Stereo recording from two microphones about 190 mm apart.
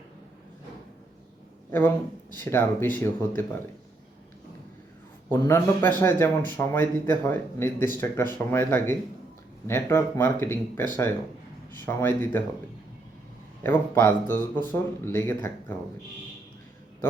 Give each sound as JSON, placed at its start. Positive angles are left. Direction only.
{"t": 2.3, "sound": "a man's voice", "side_deg": 10}
{"t": 5.3, "sound": "a man's voice", "side_deg": 10}
{"t": 13.6, "sound": "a man's voice", "side_deg": 10}